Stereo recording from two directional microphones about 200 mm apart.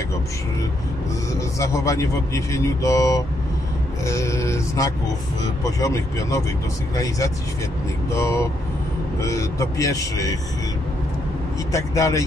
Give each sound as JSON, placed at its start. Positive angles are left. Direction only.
{"t": 1.6, "sound": "speech", "side_deg": 15}
{"t": 8.1, "sound": "speech", "side_deg": 15}
{"t": 11.7, "sound": "speech", "side_deg": 15}